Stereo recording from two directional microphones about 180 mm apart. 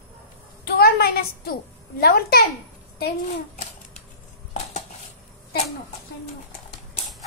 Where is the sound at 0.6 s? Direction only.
60° left (ahead or behind).